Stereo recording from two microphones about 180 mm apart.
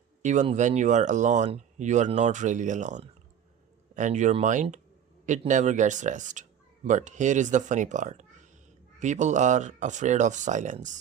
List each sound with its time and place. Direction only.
0.2 s speech: 40° right (ahead or behind)